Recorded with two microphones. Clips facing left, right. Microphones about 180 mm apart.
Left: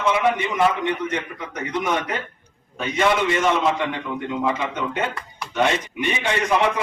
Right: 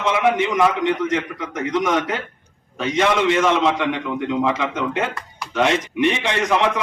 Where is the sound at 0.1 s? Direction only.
90° right.